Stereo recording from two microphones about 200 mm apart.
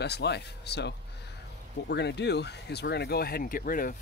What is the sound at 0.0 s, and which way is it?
Speech, 55° left (ahead or behind).